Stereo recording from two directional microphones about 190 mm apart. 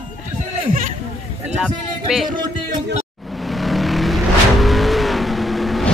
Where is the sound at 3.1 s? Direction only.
Centre (ahead or behind).